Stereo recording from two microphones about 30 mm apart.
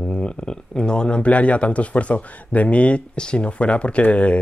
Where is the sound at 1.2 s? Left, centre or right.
Left.